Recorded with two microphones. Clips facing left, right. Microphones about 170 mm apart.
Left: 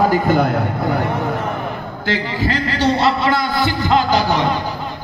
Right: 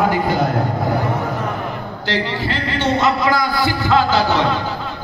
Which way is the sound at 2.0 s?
40° left (ahead or behind).